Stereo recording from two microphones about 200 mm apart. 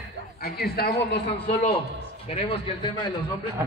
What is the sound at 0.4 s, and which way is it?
Speech, 50° left (ahead or behind).